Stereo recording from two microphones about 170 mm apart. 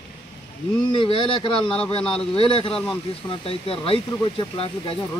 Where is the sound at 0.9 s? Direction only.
30° left (ahead or behind).